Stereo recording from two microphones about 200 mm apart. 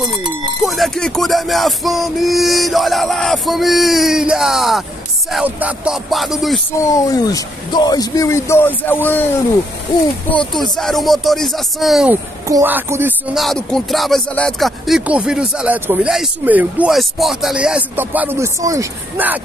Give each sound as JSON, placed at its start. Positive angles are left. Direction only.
{"t": 0.6, "sound": "speech", "side_deg": 0}
{"t": 6.8, "sound": "speech", "side_deg": 15}
{"t": 10.3, "sound": "speech", "side_deg": 5}
{"t": 12.4, "sound": "speech", "side_deg": -15}
{"t": 13.4, "sound": "speech", "side_deg": 0}